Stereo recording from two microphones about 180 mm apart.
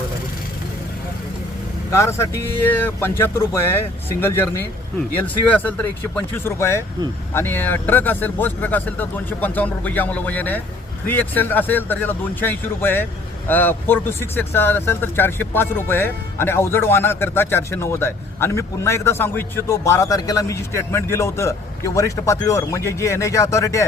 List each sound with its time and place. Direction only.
1.9 s speech: 15° left (ahead or behind)